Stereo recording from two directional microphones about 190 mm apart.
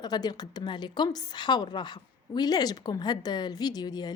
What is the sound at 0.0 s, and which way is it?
Speech, 20° left (ahead or behind).